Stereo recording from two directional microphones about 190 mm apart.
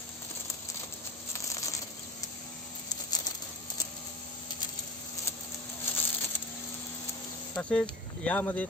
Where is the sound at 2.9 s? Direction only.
20° left (ahead or behind).